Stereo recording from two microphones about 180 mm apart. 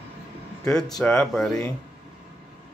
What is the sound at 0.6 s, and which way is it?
Speech, 5° left (ahead or behind).